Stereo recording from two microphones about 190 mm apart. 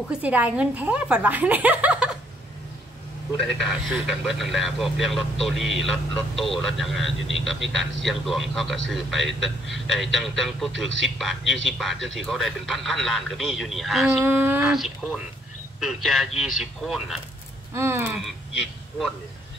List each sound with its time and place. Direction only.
0.2 s speech: 5° right (ahead or behind)
3.3 s speech: centre (ahead or behind)
14.2 s speech: 10° right (ahead or behind)
17.7 s speech: 10° right (ahead or behind)